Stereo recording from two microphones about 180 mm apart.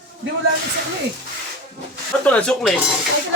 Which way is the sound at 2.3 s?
5° left (ahead or behind).